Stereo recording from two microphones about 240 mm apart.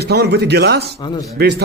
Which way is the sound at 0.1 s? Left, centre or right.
Right.